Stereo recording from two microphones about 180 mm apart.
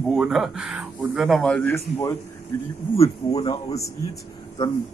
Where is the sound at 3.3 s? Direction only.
30° left (ahead or behind).